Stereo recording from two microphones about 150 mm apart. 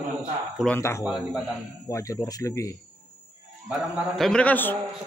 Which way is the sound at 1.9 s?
20° left (ahead or behind).